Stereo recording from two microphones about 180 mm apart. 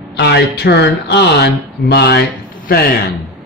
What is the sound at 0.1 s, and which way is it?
Speech, 70° left (ahead or behind).